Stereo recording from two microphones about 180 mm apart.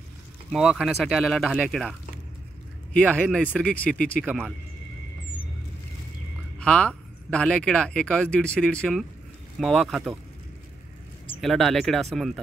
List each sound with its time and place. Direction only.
0.5 s speech: centre (ahead or behind)
6.6 s speech: 5° left (ahead or behind)
11.4 s speech: centre (ahead or behind)